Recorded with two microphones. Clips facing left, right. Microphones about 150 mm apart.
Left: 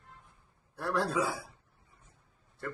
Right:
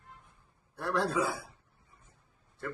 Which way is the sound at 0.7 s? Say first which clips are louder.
Even; centre (ahead or behind).